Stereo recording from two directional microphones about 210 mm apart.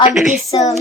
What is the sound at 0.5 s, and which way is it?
Speech, 15° left (ahead or behind).